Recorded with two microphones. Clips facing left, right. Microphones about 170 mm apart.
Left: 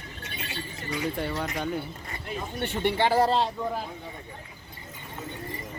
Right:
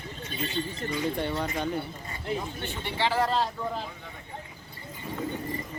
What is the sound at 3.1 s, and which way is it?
Speech, 35° left (ahead or behind).